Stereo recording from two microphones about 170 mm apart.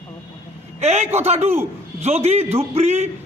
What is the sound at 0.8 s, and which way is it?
A man's voice, 40° right (ahead or behind).